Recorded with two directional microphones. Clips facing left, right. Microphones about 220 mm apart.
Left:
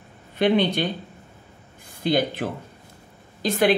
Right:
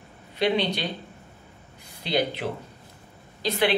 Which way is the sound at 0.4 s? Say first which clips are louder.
Left 4 dB; 50° left (ahead or behind).